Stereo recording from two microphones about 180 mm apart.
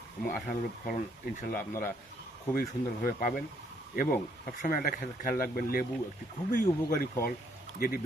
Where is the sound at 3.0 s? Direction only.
50° left (ahead or behind).